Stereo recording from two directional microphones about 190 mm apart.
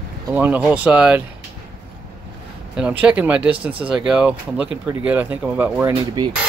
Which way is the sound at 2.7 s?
5° right (ahead or behind).